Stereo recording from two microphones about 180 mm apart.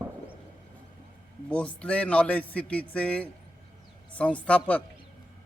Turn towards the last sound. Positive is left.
turn(degrees=5)  # may be behind; listen again after turning